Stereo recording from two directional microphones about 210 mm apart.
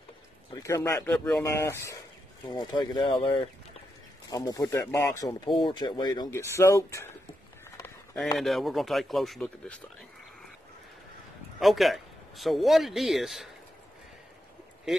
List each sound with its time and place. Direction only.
0.6 s speech: 15° left (ahead or behind)
7.7 s a sound: 15° left (ahead or behind)
8.2 s a man's voice: centre (ahead or behind)
11.6 s a man's voice: centre (ahead or behind)
14.9 s speech: centre (ahead or behind)